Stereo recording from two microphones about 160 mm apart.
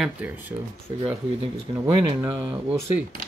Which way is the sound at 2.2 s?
20° right (ahead or behind).